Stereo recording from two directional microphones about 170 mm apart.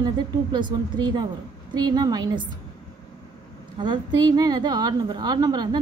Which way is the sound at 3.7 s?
25° right (ahead or behind).